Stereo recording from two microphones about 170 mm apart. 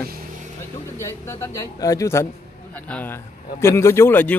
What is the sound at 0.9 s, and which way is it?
A man's voice, 15° left (ahead or behind).